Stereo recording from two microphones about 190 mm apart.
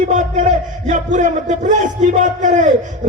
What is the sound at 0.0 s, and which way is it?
A man's voice, 40° right (ahead or behind).